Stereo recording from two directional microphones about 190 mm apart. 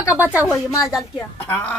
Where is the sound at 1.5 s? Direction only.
10° left (ahead or behind).